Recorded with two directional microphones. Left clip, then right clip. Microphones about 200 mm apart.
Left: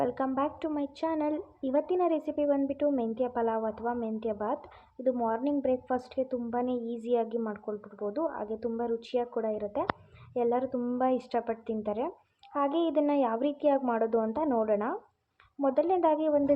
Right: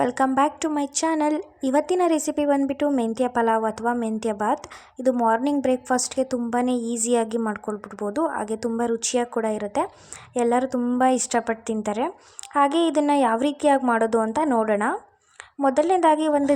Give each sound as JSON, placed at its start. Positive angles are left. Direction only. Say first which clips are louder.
{"t": 0.0, "sound": "a woman's voice", "louder": "right 9 dB", "side_deg": -40}